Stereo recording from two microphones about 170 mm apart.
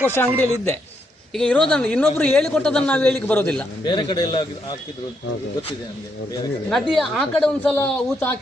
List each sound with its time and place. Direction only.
0.1 s a man's voice: 10° left (ahead or behind)
3.8 s a man's voice: 25° left (ahead or behind)
6.7 s speech: 5° left (ahead or behind)